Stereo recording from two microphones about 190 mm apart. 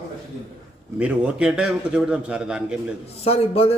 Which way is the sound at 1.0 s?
5° right (ahead or behind).